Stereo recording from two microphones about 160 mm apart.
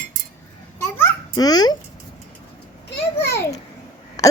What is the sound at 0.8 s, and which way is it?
Babbling, 20° left (ahead or behind).